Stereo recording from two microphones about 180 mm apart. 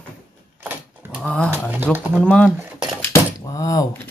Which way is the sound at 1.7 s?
10° right (ahead or behind).